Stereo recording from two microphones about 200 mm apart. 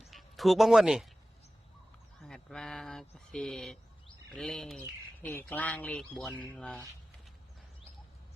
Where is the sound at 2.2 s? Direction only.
5° left (ahead or behind).